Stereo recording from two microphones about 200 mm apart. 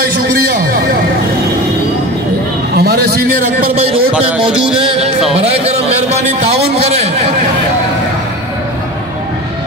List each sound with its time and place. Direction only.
2.7 s a sound: 50° right (ahead or behind)
4.1 s speech: 5° right (ahead or behind)
5.3 s a man's voice: 30° right (ahead or behind)